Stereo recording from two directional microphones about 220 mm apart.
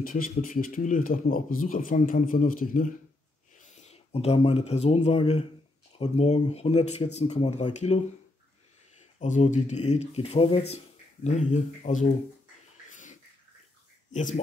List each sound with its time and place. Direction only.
0.0 s speech: 40° left (ahead or behind)
9.2 s speech: 35° left (ahead or behind)
14.1 s speech: 35° left (ahead or behind)